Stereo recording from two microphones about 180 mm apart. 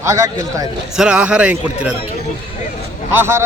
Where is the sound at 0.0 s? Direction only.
15° right (ahead or behind).